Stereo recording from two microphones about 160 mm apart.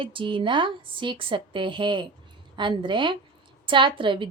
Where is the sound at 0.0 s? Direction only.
30° right (ahead or behind).